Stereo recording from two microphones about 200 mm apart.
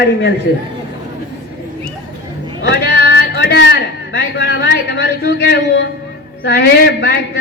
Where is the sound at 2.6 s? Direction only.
55° left (ahead or behind).